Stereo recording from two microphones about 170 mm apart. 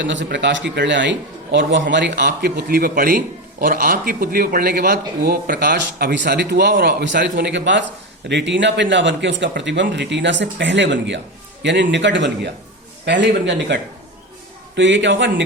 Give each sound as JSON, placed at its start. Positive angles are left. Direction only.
{"t": 0.0, "sound": "a man's voice", "side_deg": -90}
{"t": 7.2, "sound": "speech", "side_deg": -90}
{"t": 14.8, "sound": "speech", "side_deg": -90}